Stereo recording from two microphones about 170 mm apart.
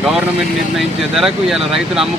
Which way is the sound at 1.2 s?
Centre (ahead or behind).